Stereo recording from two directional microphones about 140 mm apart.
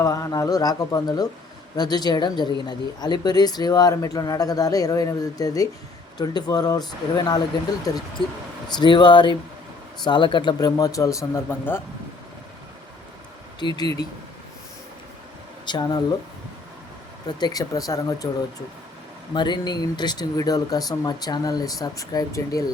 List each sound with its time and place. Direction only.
0.0 s speech: 20° left (ahead or behind)
13.6 s speech: 30° left (ahead or behind)
15.6 s speech: 30° left (ahead or behind)
17.2 s speech: 30° left (ahead or behind)
19.3 s speech: 30° left (ahead or behind)